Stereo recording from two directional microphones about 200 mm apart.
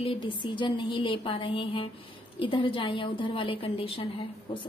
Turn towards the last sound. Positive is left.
turn(degrees=25)  # may be behind; listen again after turning